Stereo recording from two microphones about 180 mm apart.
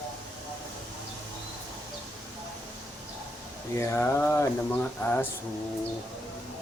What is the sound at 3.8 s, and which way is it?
Speech, 15° left (ahead or behind).